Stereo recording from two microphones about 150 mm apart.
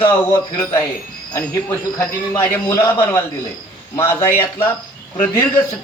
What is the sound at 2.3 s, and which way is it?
A man's voice, 20° left (ahead or behind).